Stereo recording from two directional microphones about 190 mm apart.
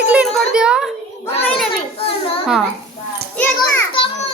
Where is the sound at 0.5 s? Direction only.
5° right (ahead or behind).